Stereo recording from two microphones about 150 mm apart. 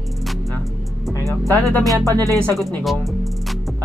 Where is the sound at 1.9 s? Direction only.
25° right (ahead or behind).